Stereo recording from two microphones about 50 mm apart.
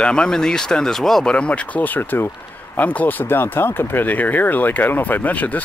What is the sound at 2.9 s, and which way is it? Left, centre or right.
Speech, left.